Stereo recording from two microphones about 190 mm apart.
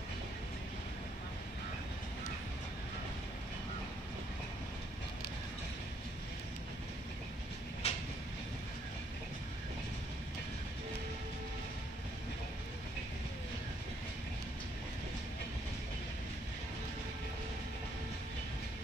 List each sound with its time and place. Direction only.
7.8 s train: 35° left (ahead or behind)